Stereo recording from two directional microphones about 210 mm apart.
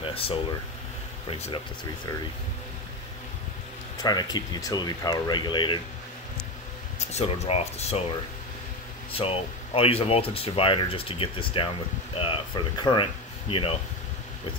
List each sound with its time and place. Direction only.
0.0 s air conditioning: 25° left (ahead or behind)
1.2 s speech: 25° left (ahead or behind)
4.0 s speech: 20° left (ahead or behind)
7.1 s speech: 30° left (ahead or behind)
9.1 s speech: 25° left (ahead or behind)